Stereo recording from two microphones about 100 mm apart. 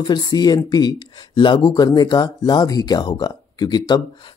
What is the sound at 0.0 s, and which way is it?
Speech, 45° left (ahead or behind).